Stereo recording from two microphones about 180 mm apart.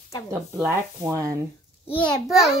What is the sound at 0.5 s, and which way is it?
Speech, 15° right (ahead or behind).